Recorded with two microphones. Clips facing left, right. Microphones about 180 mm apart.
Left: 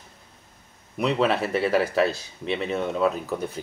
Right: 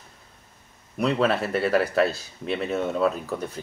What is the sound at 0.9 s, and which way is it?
A man's voice, centre (ahead or behind).